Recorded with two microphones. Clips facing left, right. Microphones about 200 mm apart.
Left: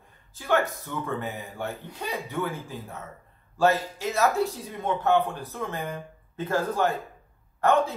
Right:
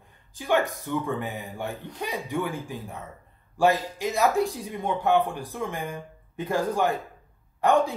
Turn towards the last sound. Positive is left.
turn(degrees=-15)  # may be behind; listen again after turning